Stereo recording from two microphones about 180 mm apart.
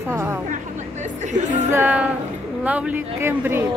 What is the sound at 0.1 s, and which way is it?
Speech, 15° right (ahead or behind).